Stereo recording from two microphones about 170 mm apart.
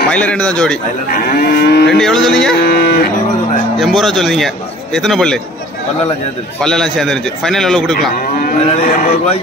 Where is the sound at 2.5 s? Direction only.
65° left (ahead or behind).